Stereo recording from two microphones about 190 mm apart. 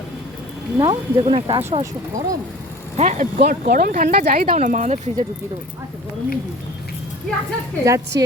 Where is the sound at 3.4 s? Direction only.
50° right (ahead or behind).